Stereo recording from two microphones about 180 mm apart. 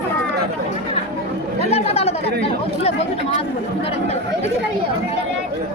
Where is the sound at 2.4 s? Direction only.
35° left (ahead or behind).